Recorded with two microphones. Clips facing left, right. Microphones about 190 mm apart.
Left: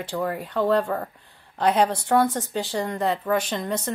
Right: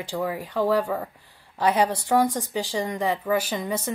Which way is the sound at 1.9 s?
10° right (ahead or behind).